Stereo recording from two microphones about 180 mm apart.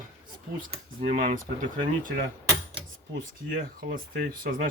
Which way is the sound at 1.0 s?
40° right (ahead or behind).